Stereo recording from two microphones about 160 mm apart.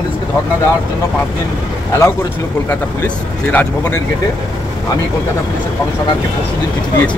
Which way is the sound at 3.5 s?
10° left (ahead or behind).